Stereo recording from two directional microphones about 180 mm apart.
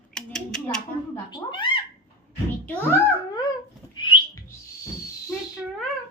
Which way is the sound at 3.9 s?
25° left (ahead or behind).